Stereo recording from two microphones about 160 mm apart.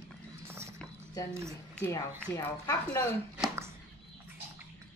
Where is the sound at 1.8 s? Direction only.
20° left (ahead or behind).